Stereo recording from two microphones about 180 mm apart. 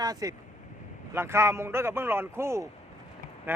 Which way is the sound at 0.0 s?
20° right (ahead or behind).